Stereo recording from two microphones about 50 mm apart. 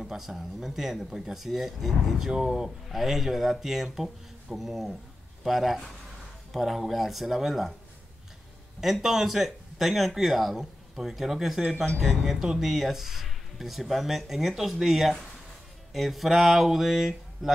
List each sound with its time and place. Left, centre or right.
0.0 s speech: centre
8.8 s speech: centre